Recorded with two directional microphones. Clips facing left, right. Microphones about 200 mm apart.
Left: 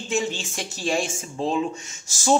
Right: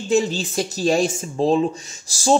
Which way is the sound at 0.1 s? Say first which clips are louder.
Right 7 dB; 40° right (ahead or behind).